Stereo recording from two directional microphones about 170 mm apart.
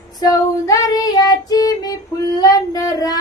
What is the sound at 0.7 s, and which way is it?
Female singing, 20° left (ahead or behind).